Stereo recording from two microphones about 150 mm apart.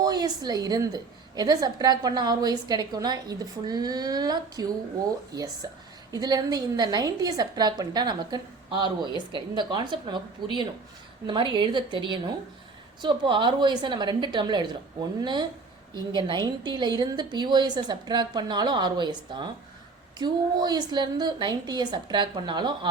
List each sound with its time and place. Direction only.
0.0 s a woman's voice: 25° right (ahead or behind)
5.6 s a woman's voice: 30° right (ahead or behind)